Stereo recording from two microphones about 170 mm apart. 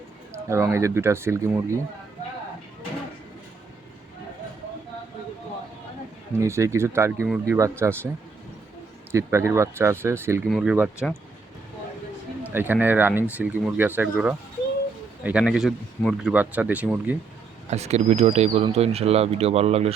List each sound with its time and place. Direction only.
0.4 s speech: 15° right (ahead or behind)
6.4 s speech: 15° right (ahead or behind)
9.1 s speech: 15° right (ahead or behind)
10.5 s speech: 5° right (ahead or behind)
12.5 s speech: 10° right (ahead or behind)
17.7 s speech: 40° right (ahead or behind)